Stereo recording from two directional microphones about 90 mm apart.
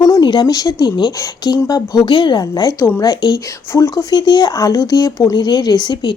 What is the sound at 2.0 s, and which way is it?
A woman's voice, 60° left (ahead or behind).